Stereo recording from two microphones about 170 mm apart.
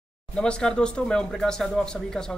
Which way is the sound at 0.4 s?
5° left (ahead or behind).